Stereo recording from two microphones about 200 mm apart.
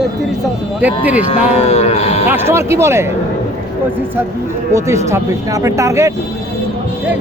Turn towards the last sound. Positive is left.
turn(degrees=-15)  # may be behind; listen again after turning